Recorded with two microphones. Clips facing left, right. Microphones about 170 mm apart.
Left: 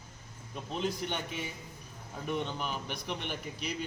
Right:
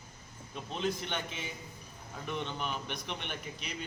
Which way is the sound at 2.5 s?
5° left (ahead or behind).